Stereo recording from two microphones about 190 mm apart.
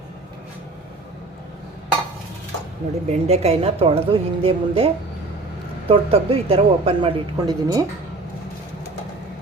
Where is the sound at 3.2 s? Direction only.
35° right (ahead or behind).